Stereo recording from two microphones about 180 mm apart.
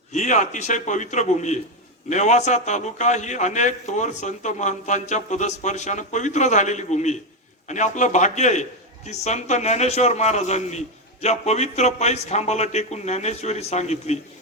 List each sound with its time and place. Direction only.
0.1 s a man's voice: 40° left (ahead or behind)